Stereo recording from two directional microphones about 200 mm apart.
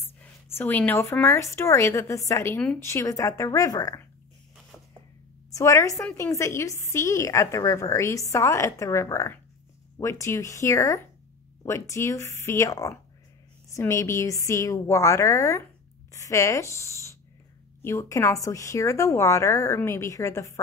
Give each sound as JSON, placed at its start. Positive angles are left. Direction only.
{"t": 0.0, "sound": "speech", "side_deg": 10}
{"t": 5.5, "sound": "speech", "side_deg": 15}